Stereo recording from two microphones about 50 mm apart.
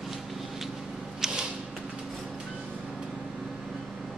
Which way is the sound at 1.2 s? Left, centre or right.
Centre.